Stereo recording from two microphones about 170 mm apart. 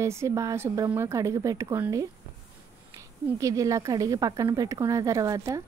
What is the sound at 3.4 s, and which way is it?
Speech, 20° right (ahead or behind).